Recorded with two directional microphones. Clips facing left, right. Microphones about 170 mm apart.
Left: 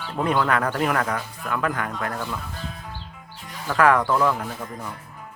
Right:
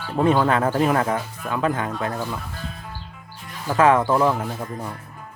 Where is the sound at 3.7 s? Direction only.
20° right (ahead or behind).